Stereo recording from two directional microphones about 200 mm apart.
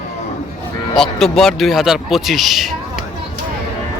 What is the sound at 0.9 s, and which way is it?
Speech, centre (ahead or behind).